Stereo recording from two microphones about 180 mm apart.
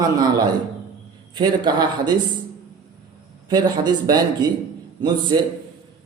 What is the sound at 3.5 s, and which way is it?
A man's voice, 20° right (ahead or behind).